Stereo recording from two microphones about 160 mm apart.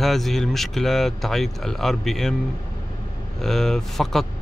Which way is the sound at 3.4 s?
Centre (ahead or behind).